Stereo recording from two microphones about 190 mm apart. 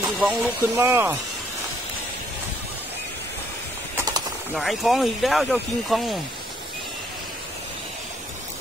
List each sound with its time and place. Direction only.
0.2 s speech: 5° right (ahead or behind)
3.9 s mechanisms: 20° right (ahead or behind)
4.6 s speech: centre (ahead or behind)